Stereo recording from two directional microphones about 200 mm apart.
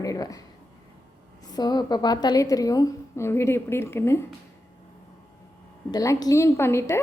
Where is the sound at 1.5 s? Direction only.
20° left (ahead or behind).